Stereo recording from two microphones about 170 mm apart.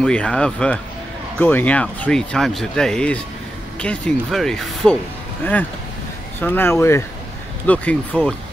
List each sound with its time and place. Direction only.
0.0 s speech: 5° left (ahead or behind)